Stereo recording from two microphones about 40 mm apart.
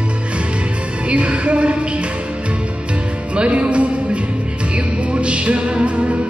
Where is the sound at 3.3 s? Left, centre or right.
Right.